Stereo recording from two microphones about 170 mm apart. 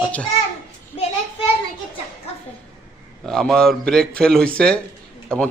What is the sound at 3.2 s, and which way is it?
Speech, 5° left (ahead or behind).